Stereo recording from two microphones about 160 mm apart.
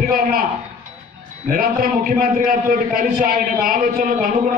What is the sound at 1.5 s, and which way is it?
A man's voice, 65° right (ahead or behind).